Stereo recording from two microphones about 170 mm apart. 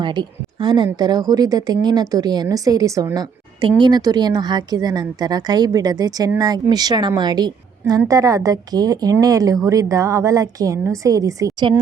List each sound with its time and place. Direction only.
0.0 s a woman's voice: 25° right (ahead or behind)